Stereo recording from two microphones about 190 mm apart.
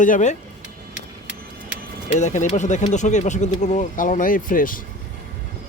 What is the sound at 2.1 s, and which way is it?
Speech, 40° left (ahead or behind).